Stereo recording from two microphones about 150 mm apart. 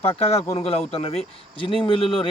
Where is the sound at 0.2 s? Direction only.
45° left (ahead or behind).